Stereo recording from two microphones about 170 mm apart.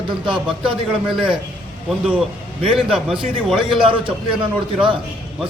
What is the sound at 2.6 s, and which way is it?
A man's voice, centre (ahead or behind).